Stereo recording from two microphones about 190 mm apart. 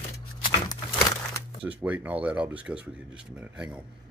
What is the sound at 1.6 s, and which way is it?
Speech, 5° right (ahead or behind).